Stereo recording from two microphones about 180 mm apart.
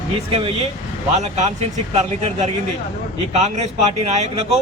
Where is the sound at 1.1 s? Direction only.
40° right (ahead or behind).